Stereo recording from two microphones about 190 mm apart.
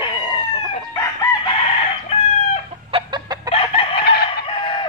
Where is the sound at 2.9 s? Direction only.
25° right (ahead or behind).